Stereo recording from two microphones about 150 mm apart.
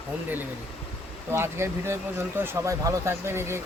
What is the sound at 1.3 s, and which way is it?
Speech, 15° right (ahead or behind).